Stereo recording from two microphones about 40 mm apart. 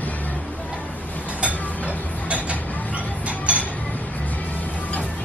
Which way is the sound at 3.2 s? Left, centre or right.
Right.